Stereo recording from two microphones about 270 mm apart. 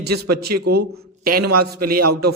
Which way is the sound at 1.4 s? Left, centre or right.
Right.